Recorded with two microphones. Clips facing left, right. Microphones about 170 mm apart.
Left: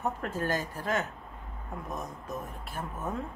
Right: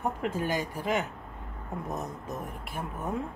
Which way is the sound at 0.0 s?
15° right (ahead or behind).